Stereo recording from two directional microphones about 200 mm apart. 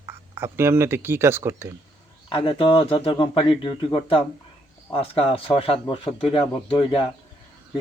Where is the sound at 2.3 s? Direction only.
25° left (ahead or behind).